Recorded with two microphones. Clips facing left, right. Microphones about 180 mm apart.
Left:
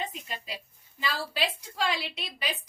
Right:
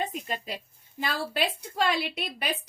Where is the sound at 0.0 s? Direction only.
50° right (ahead or behind).